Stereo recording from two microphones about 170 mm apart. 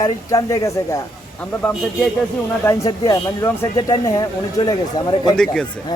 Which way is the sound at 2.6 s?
20° left (ahead or behind).